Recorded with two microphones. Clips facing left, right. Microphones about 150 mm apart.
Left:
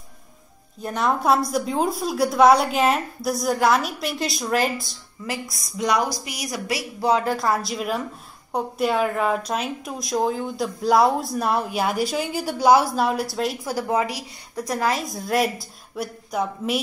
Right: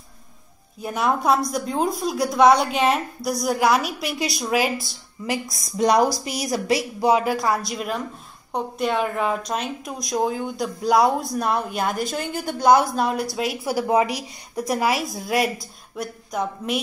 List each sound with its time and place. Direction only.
0.8 s speech: 5° right (ahead or behind)
5.2 s speech: 20° right (ahead or behind)
5.8 s speech: 35° right (ahead or behind); by 7.4 s 10° right (ahead or behind)
7.4 s speech: centre (ahead or behind)